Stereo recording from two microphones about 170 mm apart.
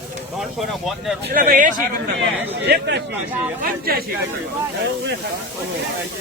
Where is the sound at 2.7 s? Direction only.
90° right.